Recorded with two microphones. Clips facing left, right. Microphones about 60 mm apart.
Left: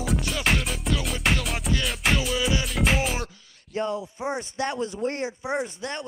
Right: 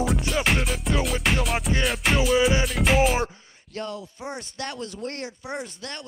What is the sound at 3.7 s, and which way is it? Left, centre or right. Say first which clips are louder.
Speech: left 5 dB; centre.